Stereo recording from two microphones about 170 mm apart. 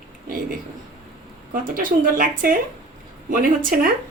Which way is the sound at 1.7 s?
55° right (ahead or behind).